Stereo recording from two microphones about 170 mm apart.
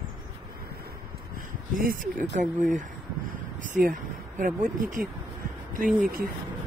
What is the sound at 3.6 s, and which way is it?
Speech, 55° right (ahead or behind).